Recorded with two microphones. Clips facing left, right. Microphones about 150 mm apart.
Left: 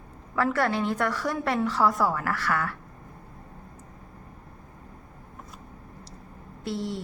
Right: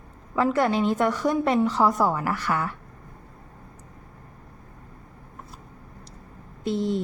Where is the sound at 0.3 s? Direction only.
20° right (ahead or behind).